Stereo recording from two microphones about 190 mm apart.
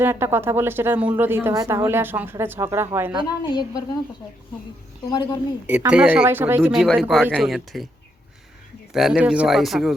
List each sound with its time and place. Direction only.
0.0 s a woman's voice: 10° right (ahead or behind)
3.4 s a woman's voice: 25° left (ahead or behind)
5.0 s a woman's voice: 20° left (ahead or behind)
5.6 s speech: 10° right (ahead or behind)
8.9 s speech: centre (ahead or behind)